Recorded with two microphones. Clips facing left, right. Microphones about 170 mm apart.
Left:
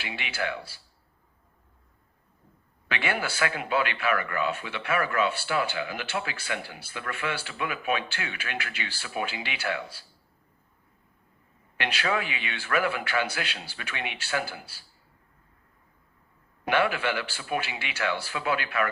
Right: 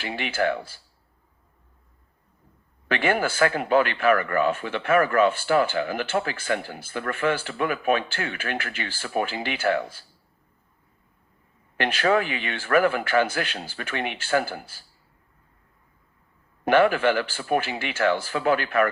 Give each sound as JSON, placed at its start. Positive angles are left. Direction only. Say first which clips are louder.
{"t": 0.0, "sound": "speech", "louder": "right 7 dB", "side_deg": -50}
{"t": 2.9, "sound": "speech", "louder": "right 7 dB", "side_deg": -50}
{"t": 11.8, "sound": "speech", "louder": "right 7 dB", "side_deg": -50}
{"t": 16.6, "sound": "speech", "louder": "right 7 dB", "side_deg": -45}